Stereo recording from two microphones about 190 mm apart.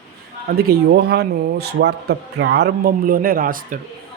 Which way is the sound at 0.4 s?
55° right (ahead or behind).